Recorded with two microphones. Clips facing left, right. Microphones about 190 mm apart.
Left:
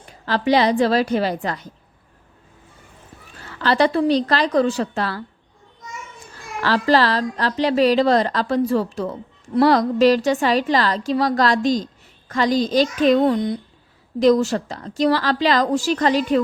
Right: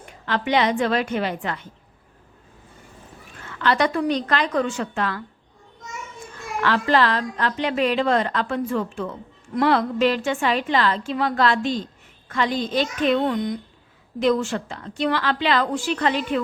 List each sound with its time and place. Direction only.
0.0 s a woman's voice: 35° left (ahead or behind)
3.4 s a woman's voice: 35° left (ahead or behind)
6.3 s a woman's voice: 35° left (ahead or behind)